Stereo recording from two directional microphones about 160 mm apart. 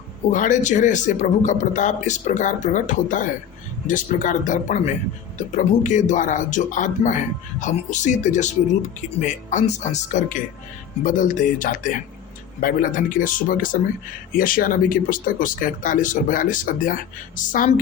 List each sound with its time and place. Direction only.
0.3 s speech: 50° left (ahead or behind)